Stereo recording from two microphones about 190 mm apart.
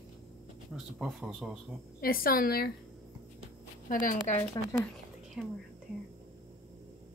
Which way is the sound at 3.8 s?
45° left (ahead or behind).